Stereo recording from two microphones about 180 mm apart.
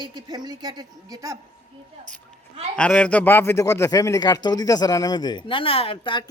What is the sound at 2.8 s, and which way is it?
A man's voice, 5° left (ahead or behind).